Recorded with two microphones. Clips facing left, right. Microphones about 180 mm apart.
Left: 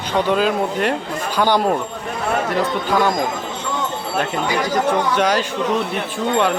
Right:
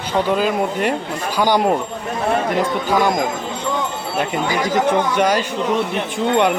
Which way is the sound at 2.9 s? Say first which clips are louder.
Right 1 dB; 15° right (ahead or behind).